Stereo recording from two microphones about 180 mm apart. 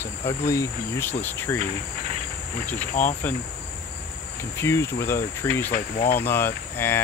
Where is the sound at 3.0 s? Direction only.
45° left (ahead or behind).